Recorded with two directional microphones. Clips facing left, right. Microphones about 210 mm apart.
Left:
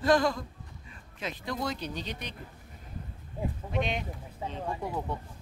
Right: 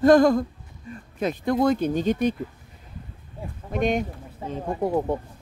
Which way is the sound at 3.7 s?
45° right (ahead or behind).